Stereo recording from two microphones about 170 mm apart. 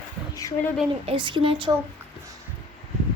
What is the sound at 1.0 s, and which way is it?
Speech, 30° right (ahead or behind).